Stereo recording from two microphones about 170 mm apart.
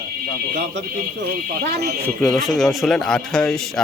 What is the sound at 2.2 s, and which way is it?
Speech, centre (ahead or behind).